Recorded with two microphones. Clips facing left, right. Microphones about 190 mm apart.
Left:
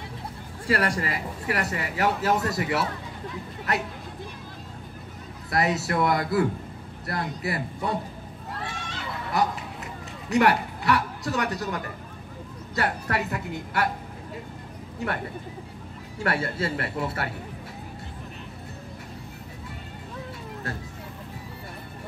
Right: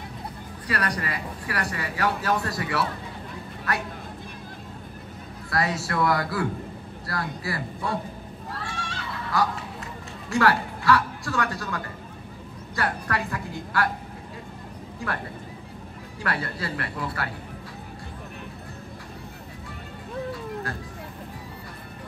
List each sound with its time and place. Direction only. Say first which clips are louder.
0.7 s speech: left 3 dB; 25° left (ahead or behind)
5.5 s speech: left 2 dB; 20° left (ahead or behind)
8.6 s a sound: even; 20° left (ahead or behind)
10.3 s speech: left 1 dB; 20° left (ahead or behind)
16.2 s speech: left 3 dB; 25° left (ahead or behind)